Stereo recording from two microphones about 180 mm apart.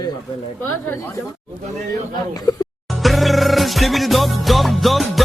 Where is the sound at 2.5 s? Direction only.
20° left (ahead or behind).